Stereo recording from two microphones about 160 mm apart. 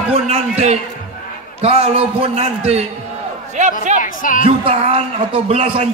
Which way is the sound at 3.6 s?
45° right (ahead or behind).